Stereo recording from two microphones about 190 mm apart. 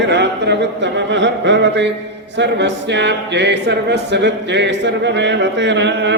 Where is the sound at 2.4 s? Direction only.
65° right (ahead or behind).